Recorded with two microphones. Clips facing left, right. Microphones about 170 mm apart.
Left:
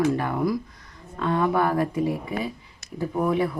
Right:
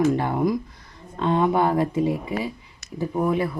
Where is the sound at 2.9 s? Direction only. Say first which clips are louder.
Right 1 dB; 10° right (ahead or behind).